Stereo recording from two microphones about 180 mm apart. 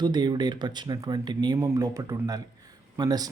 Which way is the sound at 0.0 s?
25° right (ahead or behind).